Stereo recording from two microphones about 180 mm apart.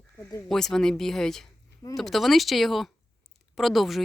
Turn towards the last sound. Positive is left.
turn(degrees=0)  # may be behind; listen again after turning